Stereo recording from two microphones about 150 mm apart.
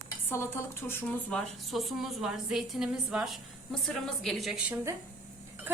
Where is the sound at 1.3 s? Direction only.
Centre (ahead or behind).